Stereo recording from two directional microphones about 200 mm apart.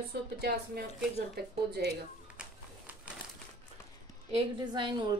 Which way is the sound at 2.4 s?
5° right (ahead or behind).